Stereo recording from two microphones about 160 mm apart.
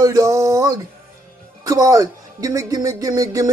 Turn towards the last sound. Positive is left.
turn(degrees=-20)  # may be behind; listen again after turning